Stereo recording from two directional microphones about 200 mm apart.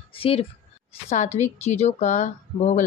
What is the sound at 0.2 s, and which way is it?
Speech, 30° left (ahead or behind).